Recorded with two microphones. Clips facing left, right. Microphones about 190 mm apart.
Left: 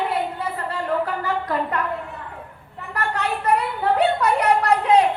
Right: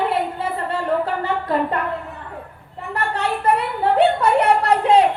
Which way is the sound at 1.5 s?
30° right (ahead or behind).